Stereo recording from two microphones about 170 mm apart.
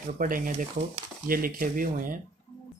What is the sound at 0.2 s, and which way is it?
Speech, 55° right (ahead or behind).